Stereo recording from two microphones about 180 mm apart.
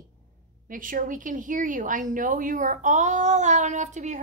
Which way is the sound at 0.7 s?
50° right (ahead or behind).